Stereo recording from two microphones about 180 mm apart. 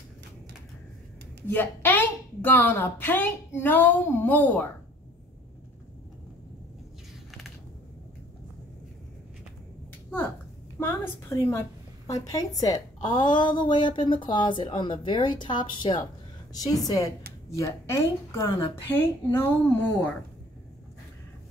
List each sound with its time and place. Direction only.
1.5 s a woman's voice: 10° left (ahead or behind)
10.8 s a woman's voice: 15° left (ahead or behind)